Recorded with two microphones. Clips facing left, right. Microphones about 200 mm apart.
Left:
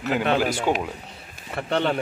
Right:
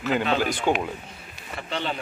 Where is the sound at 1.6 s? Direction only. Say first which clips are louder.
Left 7 dB; 60° left (ahead or behind).